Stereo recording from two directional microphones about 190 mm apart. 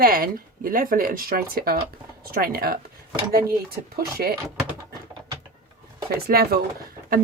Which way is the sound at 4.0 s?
55° right (ahead or behind).